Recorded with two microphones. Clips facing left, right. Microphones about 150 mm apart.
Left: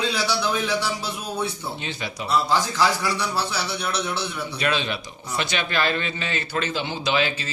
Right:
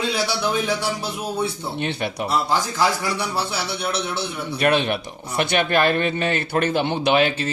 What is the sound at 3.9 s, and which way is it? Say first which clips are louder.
A man's voice: right 1 dB; 55° right (ahead or behind).